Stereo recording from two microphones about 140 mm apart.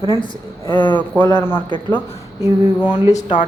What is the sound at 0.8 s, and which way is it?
Speech, 10° left (ahead or behind).